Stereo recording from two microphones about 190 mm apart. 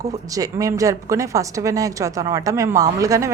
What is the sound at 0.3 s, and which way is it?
A woman's voice, 15° right (ahead or behind).